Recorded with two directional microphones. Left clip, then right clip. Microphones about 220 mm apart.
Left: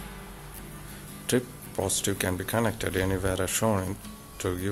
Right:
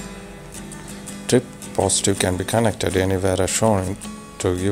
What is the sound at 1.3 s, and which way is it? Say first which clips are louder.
Speech: right 9 dB; 20° right (ahead or behind).